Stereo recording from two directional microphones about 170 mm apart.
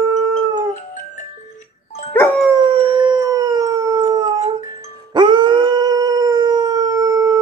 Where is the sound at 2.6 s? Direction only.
30° right (ahead or behind).